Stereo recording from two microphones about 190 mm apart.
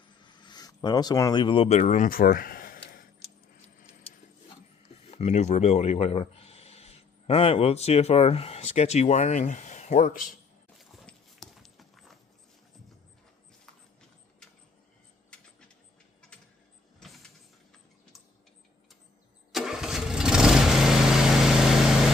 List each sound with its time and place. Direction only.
0.2 s speech: 25° left (ahead or behind); by 3.0 s 50° left (ahead or behind)
5.1 s speech: 35° left (ahead or behind)
10.8 s clip-clop: centre (ahead or behind)
19.5 s engine starting: centre (ahead or behind)
21.6 s vehicle: centre (ahead or behind)